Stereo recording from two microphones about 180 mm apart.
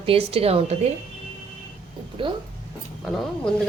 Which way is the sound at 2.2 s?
30° right (ahead or behind).